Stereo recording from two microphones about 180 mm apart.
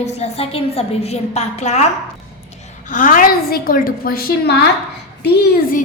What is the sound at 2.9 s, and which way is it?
A woman's voice, 50° left (ahead or behind).